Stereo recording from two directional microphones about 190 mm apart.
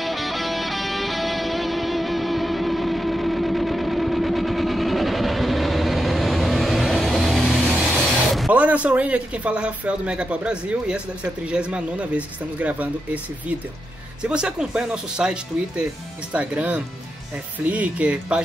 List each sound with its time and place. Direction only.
0.0 s music: centre (ahead or behind)
8.4 s a man's voice: 5° right (ahead or behind)